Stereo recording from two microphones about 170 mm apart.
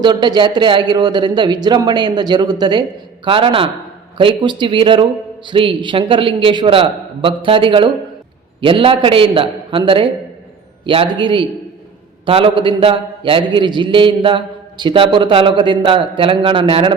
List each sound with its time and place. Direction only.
0.0 s a man's voice: 25° right (ahead or behind)